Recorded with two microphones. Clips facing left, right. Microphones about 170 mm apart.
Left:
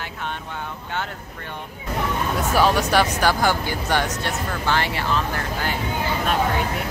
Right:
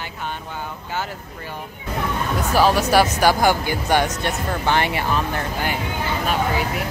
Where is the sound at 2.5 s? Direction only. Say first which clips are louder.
Right 2 dB; 5° right (ahead or behind).